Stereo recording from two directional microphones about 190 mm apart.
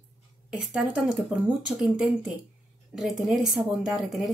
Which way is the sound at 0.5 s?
5° right (ahead or behind).